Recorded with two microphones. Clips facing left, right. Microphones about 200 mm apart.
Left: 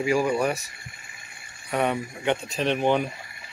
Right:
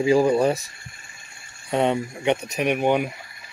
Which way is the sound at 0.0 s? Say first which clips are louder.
Right 5 dB; 30° right (ahead or behind).